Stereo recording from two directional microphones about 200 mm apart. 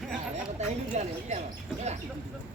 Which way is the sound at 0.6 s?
35° right (ahead or behind).